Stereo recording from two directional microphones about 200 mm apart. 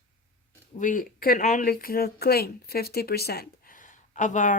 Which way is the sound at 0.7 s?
40° left (ahead or behind).